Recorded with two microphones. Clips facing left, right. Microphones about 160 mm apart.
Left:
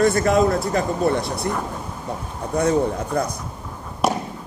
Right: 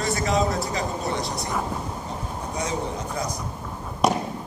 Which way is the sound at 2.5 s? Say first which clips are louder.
Left 10 dB; 55° left (ahead or behind).